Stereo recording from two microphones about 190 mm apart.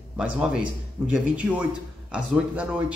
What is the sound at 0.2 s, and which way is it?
A man's voice, 5° right (ahead or behind).